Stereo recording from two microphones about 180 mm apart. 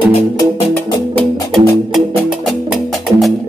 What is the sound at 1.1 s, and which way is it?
Music, 5° left (ahead or behind).